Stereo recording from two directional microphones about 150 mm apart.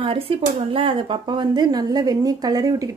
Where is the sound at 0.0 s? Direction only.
35° right (ahead or behind).